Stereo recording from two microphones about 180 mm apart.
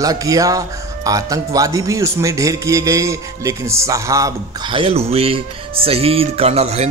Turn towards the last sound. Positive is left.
turn(degrees=-35)  # may be behind; listen again after turning